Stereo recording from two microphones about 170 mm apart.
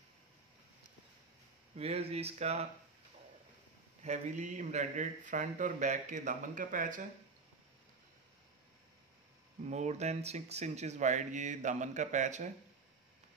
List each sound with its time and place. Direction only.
1.8 s speech: 35° right (ahead or behind)
4.0 s speech: 45° right (ahead or behind)
9.7 s speech: 40° right (ahead or behind)